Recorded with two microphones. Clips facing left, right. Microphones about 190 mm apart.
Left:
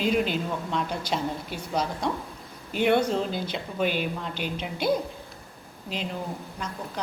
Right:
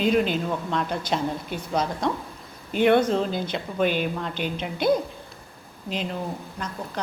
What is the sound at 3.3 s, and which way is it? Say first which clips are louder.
Speech: right 3 dB; 50° right (ahead or behind).